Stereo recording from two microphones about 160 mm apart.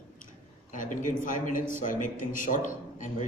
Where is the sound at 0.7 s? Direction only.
55° left (ahead or behind).